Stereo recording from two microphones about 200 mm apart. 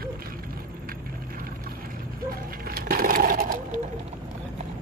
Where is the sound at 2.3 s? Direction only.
50° right (ahead or behind).